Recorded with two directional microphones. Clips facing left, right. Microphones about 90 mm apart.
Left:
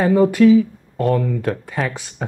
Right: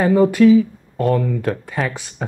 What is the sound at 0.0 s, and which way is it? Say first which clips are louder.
Speech: even; 20° right (ahead or behind).